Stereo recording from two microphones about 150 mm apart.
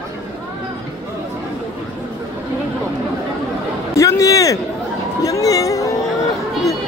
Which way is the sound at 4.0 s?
20° left (ahead or behind).